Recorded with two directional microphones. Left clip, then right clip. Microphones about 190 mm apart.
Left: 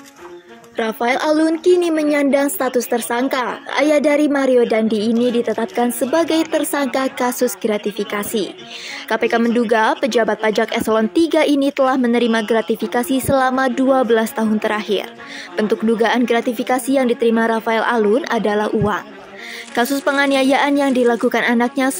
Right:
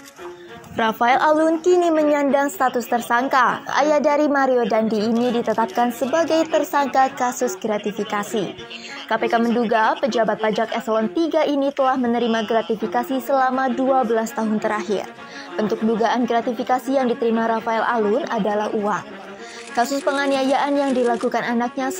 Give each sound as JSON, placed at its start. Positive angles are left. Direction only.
{"t": 0.7, "sound": "a woman's voice", "side_deg": 45}
{"t": 5.1, "sound": "a woman's voice", "side_deg": 0}
{"t": 5.8, "sound": "a woman's voice", "side_deg": 50}